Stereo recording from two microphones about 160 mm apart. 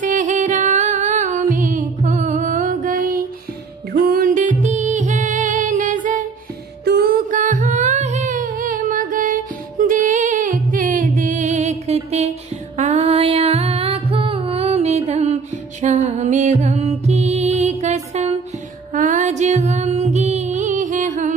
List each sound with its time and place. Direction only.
0.0 s music: 55° right (ahead or behind)
6.8 s music: 80° right; by 21.3 s 55° right (ahead or behind)